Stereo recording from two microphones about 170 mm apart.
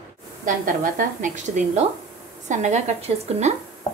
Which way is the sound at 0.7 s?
50° right (ahead or behind).